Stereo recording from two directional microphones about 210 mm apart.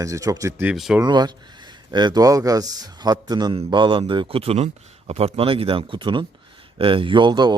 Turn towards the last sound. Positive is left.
turn(degrees=-20)  # may be behind; listen again after turning